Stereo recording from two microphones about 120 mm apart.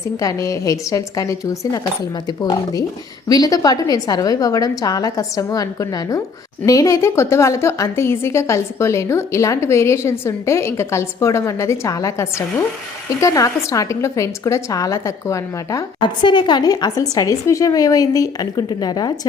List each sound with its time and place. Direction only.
0.2 s a woman's voice: 25° left (ahead or behind)
16.0 s speech: 40° left (ahead or behind)